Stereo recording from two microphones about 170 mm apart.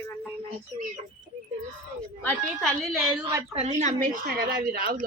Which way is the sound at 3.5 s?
40° right (ahead or behind).